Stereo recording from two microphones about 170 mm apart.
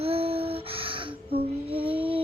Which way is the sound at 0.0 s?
35° right (ahead or behind).